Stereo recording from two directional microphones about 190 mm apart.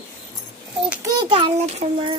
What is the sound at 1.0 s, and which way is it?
A child's voice, 25° right (ahead or behind).